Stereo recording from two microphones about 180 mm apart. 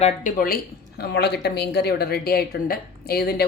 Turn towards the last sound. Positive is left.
turn(degrees=60)  # may be behind; listen again after turning